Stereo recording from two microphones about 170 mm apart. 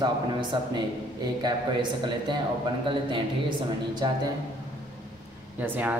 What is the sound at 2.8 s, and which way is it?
Speech, 30° right (ahead or behind).